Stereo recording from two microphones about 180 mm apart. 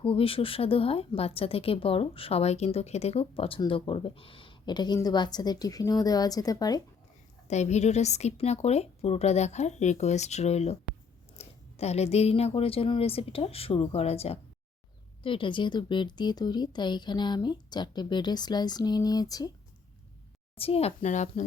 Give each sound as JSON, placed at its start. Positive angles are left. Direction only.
{"t": 0.0, "sound": "a woman's voice", "side_deg": 30}
{"t": 7.4, "sound": "a woman's voice", "side_deg": 40}
{"t": 20.6, "sound": "a woman's voice", "side_deg": 35}